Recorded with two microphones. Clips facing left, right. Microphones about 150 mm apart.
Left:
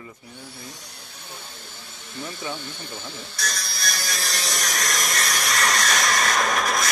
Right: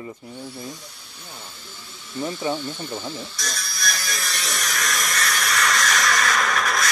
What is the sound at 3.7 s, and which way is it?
Electric toothbrush, 30° left (ahead or behind).